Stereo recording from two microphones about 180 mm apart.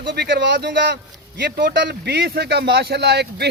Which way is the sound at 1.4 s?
60° right (ahead or behind).